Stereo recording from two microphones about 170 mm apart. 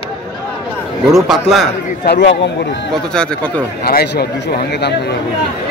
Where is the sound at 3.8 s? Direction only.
65° left (ahead or behind).